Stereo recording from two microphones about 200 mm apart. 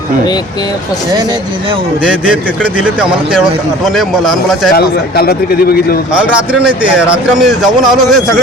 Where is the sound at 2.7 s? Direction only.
5° right (ahead or behind).